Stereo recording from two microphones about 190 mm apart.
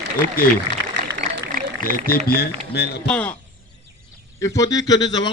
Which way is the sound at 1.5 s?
45° right (ahead or behind).